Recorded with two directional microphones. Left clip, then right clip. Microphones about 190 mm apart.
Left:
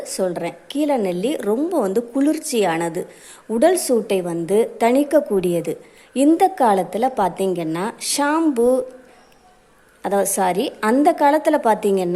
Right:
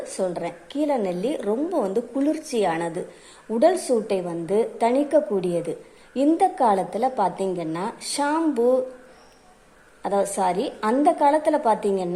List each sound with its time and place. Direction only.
0.0 s a woman's voice: 20° left (ahead or behind)
10.0 s a woman's voice: 20° left (ahead or behind)